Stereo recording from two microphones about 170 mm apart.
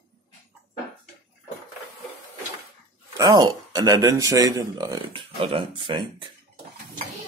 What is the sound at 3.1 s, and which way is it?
Speech, 20° right (ahead or behind).